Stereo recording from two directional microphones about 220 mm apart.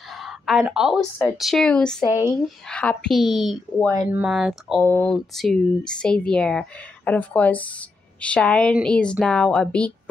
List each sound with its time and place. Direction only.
0.2 s speech: centre (ahead or behind)
2.0 s speech: 15° left (ahead or behind)
2.7 s speech: 5° left (ahead or behind)